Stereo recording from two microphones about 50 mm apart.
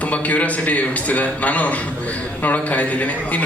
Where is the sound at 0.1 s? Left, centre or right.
Left.